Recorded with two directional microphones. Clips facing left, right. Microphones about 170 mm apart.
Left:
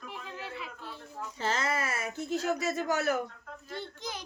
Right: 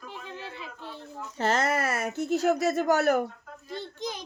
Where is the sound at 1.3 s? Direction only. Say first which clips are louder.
Right 6 dB; 65° right (ahead or behind).